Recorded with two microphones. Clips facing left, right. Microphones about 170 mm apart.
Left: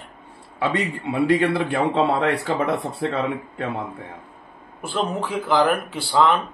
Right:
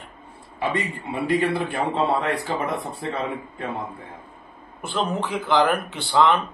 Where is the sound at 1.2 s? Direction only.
75° left (ahead or behind).